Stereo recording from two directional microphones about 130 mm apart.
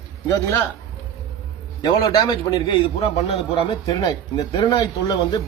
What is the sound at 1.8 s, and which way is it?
Speech, 30° left (ahead or behind).